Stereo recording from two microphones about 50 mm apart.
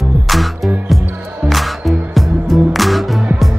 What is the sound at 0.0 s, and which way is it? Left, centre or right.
Music, centre.